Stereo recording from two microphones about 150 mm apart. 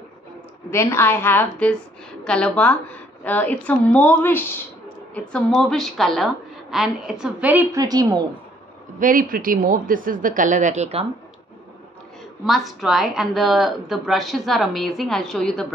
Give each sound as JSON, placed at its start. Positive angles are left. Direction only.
{"t": 0.7, "sound": "a woman's voice", "side_deg": 15}
{"t": 7.7, "sound": "a woman's voice", "side_deg": -25}
{"t": 9.0, "sound": "a woman's voice", "side_deg": -70}
{"t": 12.4, "sound": "a woman's voice", "side_deg": 0}